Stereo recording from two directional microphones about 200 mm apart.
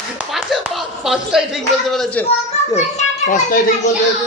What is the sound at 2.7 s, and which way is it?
Speech, 35° left (ahead or behind).